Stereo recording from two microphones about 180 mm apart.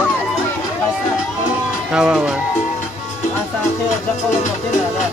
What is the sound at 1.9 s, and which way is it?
Speech, 5° right (ahead or behind).